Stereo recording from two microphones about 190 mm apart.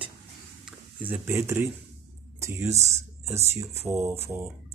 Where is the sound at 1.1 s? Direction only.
15° right (ahead or behind).